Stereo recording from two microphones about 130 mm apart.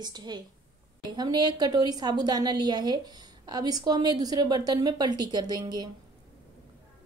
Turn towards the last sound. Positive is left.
turn(degrees=-30)  # may be behind; listen again after turning